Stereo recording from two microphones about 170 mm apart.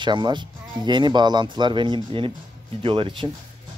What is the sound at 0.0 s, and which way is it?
Speech, 25° right (ahead or behind).